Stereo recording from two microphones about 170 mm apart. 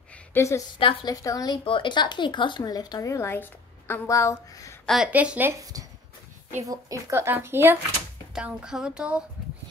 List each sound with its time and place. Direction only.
0.3 s a woman's voice: 15° left (ahead or behind)
0.7 s a woman's voice: 25° left (ahead or behind)
4.8 s a woman's voice: 5° right (ahead or behind)